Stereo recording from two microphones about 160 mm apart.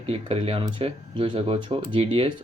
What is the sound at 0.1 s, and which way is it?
Speech, 35° right (ahead or behind).